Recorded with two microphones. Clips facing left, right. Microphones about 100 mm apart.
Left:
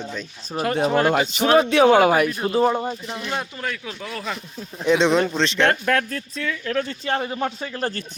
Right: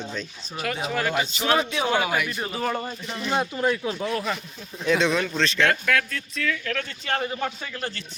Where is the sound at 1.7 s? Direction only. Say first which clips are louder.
Left 9 dB; 60° left (ahead or behind); by 2.4 s 45° left (ahead or behind).